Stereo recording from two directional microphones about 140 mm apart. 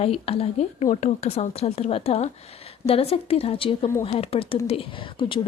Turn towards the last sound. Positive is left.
turn(degrees=40)  # may be behind; listen again after turning